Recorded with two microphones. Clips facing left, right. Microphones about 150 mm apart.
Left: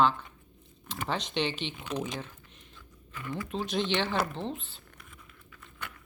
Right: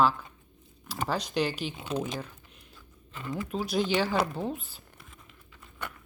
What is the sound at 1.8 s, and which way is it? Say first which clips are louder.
Speech: right 2 dB; 30° right (ahead or behind).